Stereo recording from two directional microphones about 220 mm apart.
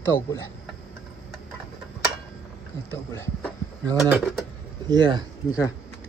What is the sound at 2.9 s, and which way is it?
Speech, 10° left (ahead or behind).